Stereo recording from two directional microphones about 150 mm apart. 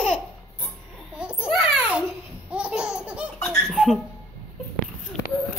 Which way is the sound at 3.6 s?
Centre (ahead or behind).